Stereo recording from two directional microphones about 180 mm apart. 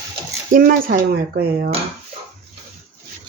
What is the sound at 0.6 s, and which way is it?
Speech, 55° right (ahead or behind).